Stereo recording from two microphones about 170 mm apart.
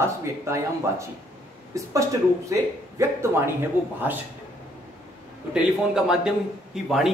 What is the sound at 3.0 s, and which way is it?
Speech, 15° right (ahead or behind).